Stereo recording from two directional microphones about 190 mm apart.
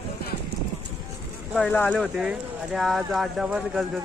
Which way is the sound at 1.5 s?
5° left (ahead or behind).